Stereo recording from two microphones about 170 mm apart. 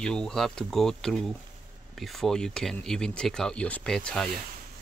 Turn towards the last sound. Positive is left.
turn(degrees=5)  # may be behind; listen again after turning